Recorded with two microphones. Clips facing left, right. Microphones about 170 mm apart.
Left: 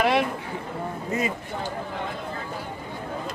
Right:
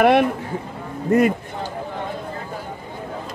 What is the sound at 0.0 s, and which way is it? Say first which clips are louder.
Speech: right 7 dB; 60° right (ahead or behind).